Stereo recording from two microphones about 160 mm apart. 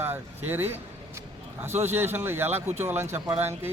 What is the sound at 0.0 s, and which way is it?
A man's voice, 15° right (ahead or behind).